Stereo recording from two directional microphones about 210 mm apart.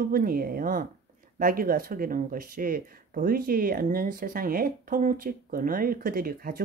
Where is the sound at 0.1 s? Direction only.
45° right (ahead or behind).